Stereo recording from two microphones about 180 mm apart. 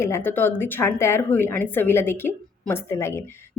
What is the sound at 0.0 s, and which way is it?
A woman's voice, 15° left (ahead or behind).